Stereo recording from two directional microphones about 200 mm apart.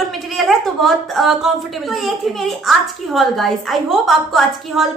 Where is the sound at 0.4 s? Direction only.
Centre (ahead or behind).